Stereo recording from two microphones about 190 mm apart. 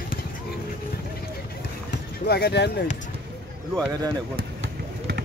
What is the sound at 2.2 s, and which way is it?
Speech, 60° left (ahead or behind).